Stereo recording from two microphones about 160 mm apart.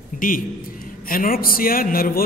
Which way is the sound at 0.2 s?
60° left (ahead or behind).